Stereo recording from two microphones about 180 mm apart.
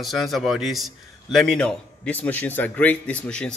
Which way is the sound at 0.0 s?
Centre (ahead or behind).